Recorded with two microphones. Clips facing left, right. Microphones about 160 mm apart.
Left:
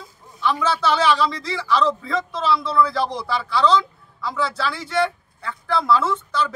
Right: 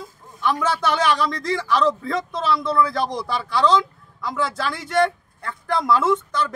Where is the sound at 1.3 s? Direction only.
50° right (ahead or behind).